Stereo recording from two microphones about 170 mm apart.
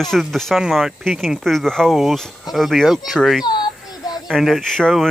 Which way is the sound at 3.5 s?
25° left (ahead or behind).